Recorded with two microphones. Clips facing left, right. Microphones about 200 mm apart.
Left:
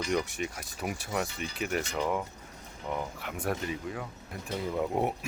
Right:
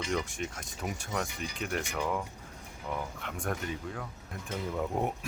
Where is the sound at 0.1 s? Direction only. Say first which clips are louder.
Left 3 dB; 5° left (ahead or behind).